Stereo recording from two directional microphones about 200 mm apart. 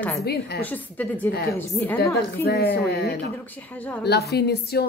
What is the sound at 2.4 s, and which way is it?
Speech, 50° left (ahead or behind).